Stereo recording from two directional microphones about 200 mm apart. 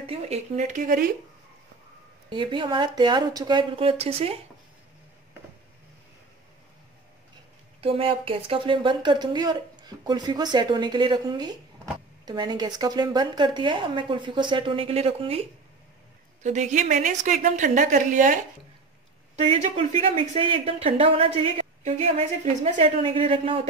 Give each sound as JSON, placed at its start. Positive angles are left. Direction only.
{"t": 0.0, "sound": "speech", "side_deg": -30}
{"t": 2.2, "sound": "a woman's voice", "side_deg": -25}
{"t": 7.8, "sound": "a woman's voice", "side_deg": -25}
{"t": 16.4, "sound": "a woman's voice", "side_deg": -35}